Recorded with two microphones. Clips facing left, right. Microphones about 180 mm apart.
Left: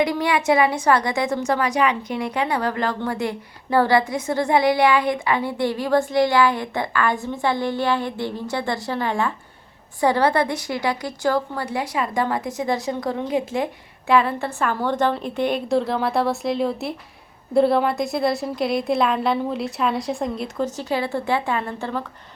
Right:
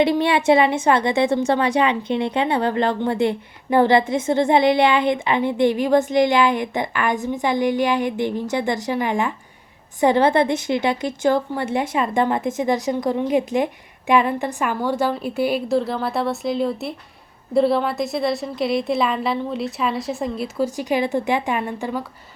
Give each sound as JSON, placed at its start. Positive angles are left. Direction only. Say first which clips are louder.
{"t": 0.0, "sound": "a woman's voice", "louder": "right 3 dB", "side_deg": -25}